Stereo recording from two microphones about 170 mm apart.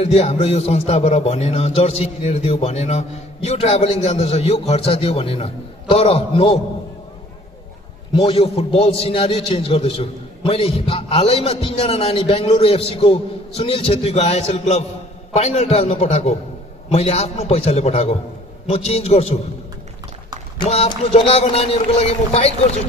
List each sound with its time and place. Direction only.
0.0 s a man's voice: 35° left (ahead or behind)
8.1 s a man's voice: 35° left (ahead or behind)
20.5 s a man's voice: 35° left (ahead or behind)